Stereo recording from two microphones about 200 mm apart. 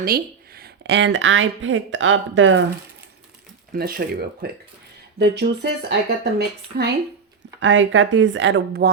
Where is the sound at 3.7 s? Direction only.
45° right (ahead or behind).